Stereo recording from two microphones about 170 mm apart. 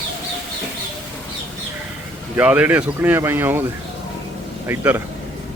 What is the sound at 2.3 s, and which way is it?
Speech, 10° right (ahead or behind).